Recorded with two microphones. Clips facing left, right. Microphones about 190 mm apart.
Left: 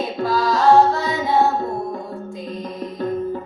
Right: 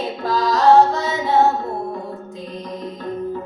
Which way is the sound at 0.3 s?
20° right (ahead or behind).